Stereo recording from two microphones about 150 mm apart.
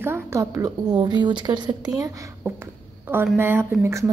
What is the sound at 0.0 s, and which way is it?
A woman's voice, 15° right (ahead or behind).